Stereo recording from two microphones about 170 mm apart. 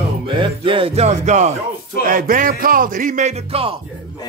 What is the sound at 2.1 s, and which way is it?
Speech, 55° right (ahead or behind).